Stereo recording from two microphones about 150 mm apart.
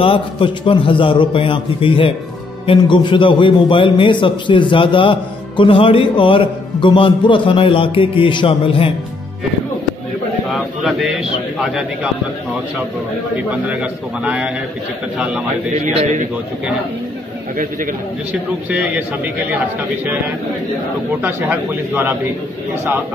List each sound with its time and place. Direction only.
0.0 s a man's voice: 35° left (ahead or behind)
10.5 s a man's voice: centre (ahead or behind)
13.5 s a man's voice: 10° right (ahead or behind)
15.7 s a man's voice: 50° right (ahead or behind)
17.6 s a man's voice: 65° right (ahead or behind)
18.3 s a man's voice: 10° right (ahead or behind)
21.2 s a man's voice: 15° right (ahead or behind)